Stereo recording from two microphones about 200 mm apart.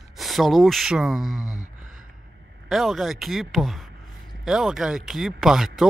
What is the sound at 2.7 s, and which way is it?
A man's voice, centre (ahead or behind).